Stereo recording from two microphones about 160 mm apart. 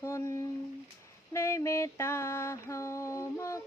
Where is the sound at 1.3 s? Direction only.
15° left (ahead or behind).